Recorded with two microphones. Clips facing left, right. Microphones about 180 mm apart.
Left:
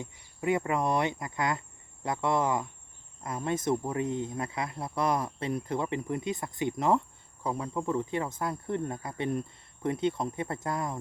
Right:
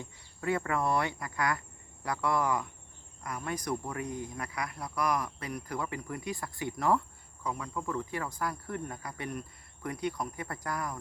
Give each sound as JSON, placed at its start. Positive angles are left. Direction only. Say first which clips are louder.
{"t": 0.0, "sound": "speech", "louder": "left 4 dB", "side_deg": 20}